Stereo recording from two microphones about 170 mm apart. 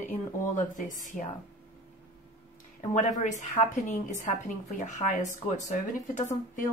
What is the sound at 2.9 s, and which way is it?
A woman's voice, 45° left (ahead or behind).